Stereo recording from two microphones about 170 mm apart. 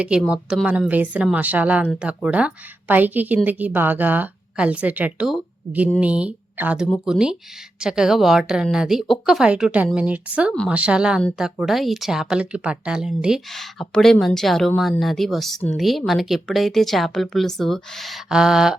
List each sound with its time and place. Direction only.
0.0 s a woman's voice: 5° right (ahead or behind)